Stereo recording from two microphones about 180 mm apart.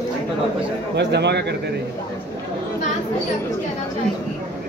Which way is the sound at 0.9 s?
70° right (ahead or behind).